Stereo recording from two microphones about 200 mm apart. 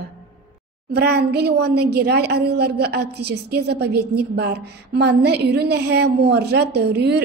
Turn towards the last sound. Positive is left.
turn(degrees=-55)  # may be behind; listen again after turning